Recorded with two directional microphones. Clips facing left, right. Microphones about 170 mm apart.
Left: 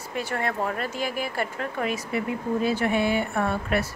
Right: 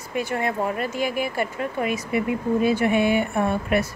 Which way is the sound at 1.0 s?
40° left (ahead or behind).